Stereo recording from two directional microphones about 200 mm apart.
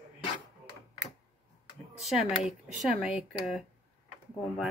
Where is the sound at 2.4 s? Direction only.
5° right (ahead or behind).